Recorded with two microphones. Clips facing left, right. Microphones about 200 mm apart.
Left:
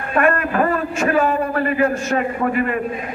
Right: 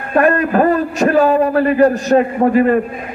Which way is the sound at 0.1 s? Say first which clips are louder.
Right 5 dB; 35° right (ahead or behind).